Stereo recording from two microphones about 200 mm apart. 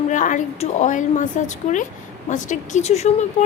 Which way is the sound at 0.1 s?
40° left (ahead or behind).